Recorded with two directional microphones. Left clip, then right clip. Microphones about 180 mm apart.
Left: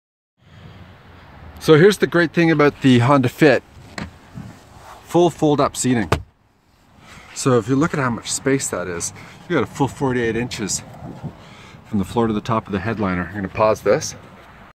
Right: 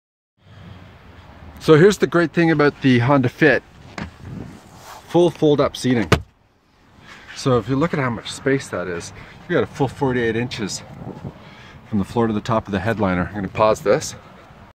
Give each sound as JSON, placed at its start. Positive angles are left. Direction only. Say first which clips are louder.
{"t": 1.6, "sound": "speech", "louder": "even", "side_deg": 0}
{"t": 5.0, "sound": "speech", "louder": "even", "side_deg": 20}
{"t": 7.4, "sound": "speech", "louder": "left 2 dB", "side_deg": 10}
{"t": 12.0, "sound": "speech", "louder": "left 1 dB", "side_deg": 0}
{"t": 12.7, "sound": "speech", "louder": "right 2 dB", "side_deg": -20}